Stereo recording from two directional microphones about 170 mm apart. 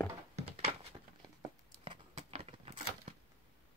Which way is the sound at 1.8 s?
35° right (ahead or behind).